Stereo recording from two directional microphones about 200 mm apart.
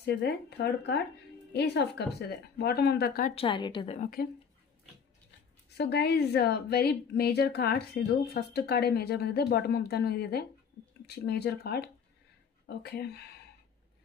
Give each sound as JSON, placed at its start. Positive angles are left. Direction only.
{"t": 0.0, "sound": "a woman's voice", "side_deg": 55}
{"t": 3.3, "sound": "a woman's voice", "side_deg": 25}
{"t": 4.0, "sound": "a woman's voice", "side_deg": 45}
{"t": 5.8, "sound": "a woman's voice", "side_deg": 55}